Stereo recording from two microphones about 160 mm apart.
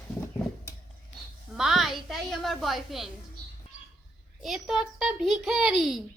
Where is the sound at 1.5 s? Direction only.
Centre (ahead or behind).